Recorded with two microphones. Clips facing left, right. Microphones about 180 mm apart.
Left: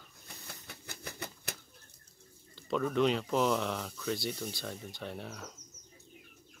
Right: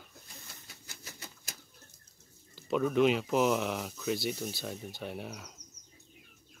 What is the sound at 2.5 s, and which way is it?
Speech, 5° right (ahead or behind).